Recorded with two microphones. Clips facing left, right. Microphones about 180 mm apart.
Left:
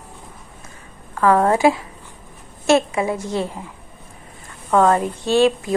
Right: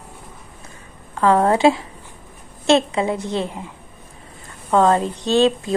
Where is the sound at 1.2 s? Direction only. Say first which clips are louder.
Even; 25° right (ahead or behind).